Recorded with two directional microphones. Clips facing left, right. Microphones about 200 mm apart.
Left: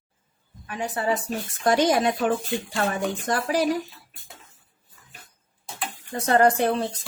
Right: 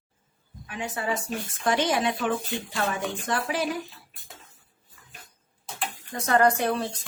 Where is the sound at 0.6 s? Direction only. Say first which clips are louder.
Left 4 dB; 35° left (ahead or behind).